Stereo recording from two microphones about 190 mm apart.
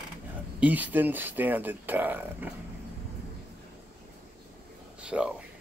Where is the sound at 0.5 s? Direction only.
10° right (ahead or behind).